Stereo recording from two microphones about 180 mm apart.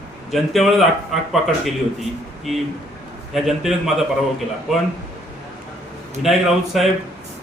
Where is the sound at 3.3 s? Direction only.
Centre (ahead or behind).